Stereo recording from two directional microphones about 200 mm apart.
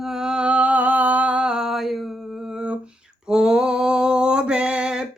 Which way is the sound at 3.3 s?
5° right (ahead or behind).